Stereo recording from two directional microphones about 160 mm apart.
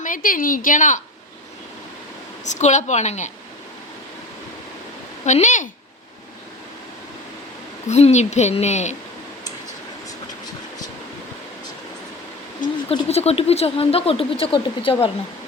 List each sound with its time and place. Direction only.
0.0 s a woman's voice: 60° left (ahead or behind)
2.4 s a woman's voice: 50° left (ahead or behind)
5.2 s a woman's voice: 45° left (ahead or behind)
7.9 s a woman's voice: 45° left (ahead or behind)
13.1 s speech: 40° left (ahead or behind)